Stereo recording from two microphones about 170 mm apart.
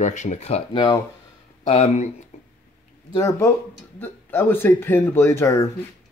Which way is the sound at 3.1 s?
15° left (ahead or behind).